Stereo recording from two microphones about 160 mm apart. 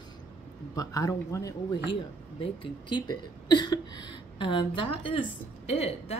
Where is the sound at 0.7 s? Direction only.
20° left (ahead or behind).